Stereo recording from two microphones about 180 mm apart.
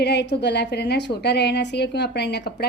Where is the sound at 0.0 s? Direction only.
70° left (ahead or behind).